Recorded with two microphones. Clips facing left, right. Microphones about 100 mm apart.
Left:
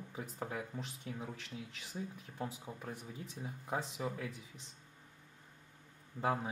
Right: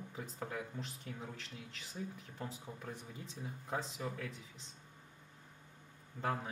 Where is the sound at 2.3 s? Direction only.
10° left (ahead or behind).